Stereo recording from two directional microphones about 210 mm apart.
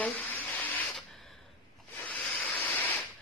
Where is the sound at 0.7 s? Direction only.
Centre (ahead or behind).